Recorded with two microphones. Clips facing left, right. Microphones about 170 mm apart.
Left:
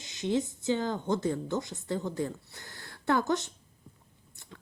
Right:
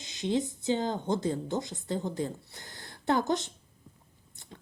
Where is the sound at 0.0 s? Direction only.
20° right (ahead or behind).